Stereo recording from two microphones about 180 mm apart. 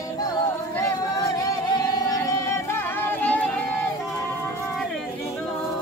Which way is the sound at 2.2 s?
15° left (ahead or behind).